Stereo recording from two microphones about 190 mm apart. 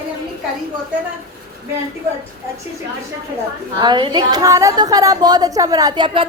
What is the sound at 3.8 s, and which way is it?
A woman's voice, 25° right (ahead or behind).